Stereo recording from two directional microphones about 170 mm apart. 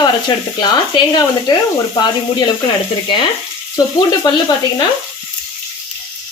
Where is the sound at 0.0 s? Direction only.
25° left (ahead or behind).